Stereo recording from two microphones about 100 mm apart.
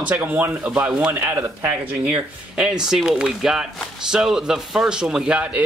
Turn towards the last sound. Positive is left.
turn(degrees=-10)  # may be behind; listen again after turning